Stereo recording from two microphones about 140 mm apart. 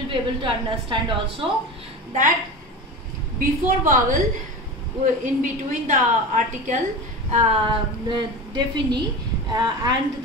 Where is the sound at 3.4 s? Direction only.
70° right (ahead or behind).